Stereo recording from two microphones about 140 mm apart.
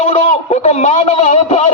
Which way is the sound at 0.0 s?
50° left (ahead or behind).